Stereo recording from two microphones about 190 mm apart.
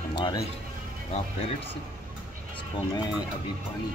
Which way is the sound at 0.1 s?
25° left (ahead or behind).